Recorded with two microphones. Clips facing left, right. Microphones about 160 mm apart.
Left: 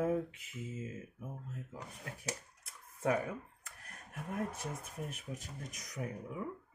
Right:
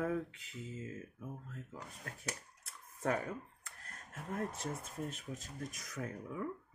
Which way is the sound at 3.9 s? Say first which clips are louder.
Left 1 dB; 15° left (ahead or behind).